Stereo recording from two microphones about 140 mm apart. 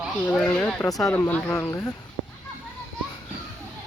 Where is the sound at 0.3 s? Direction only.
5° left (ahead or behind).